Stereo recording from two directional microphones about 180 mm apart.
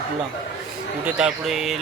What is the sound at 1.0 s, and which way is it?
Speech, 5° right (ahead or behind).